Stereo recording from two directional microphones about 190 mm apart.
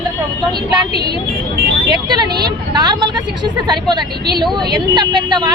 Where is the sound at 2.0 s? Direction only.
20° right (ahead or behind).